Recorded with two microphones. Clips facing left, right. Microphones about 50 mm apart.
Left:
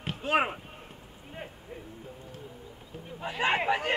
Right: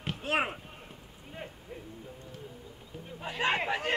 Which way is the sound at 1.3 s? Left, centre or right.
Centre.